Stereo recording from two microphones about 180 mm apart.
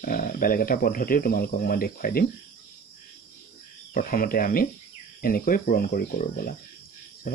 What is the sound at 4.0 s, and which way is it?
Speech, 55° left (ahead or behind).